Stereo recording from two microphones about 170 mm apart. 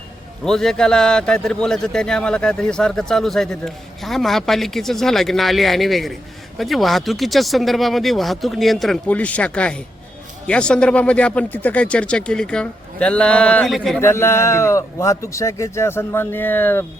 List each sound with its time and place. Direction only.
0.4 s speech: centre (ahead or behind)
14.0 s speech: 15° left (ahead or behind)